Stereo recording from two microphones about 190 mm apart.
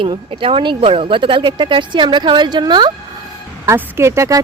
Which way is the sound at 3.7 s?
10° right (ahead or behind).